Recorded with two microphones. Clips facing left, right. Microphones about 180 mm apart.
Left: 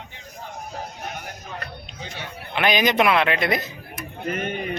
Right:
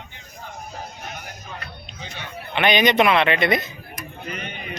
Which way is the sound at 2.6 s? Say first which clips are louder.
Right 2 dB; centre (ahead or behind).